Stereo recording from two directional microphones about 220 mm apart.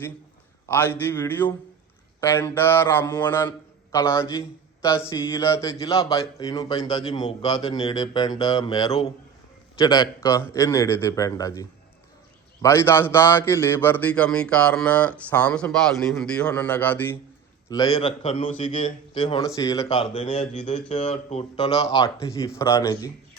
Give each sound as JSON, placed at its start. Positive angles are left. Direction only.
{"t": 0.7, "sound": "a man's voice", "side_deg": 10}
{"t": 20.1, "sound": "speech", "side_deg": 30}